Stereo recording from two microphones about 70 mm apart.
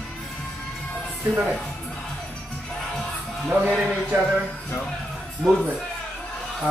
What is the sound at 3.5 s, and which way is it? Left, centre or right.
Speech, centre.